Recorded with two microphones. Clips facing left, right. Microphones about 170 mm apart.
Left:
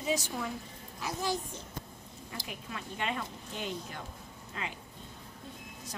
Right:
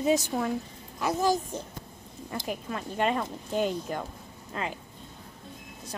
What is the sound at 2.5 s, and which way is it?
Speech, 45° right (ahead or behind).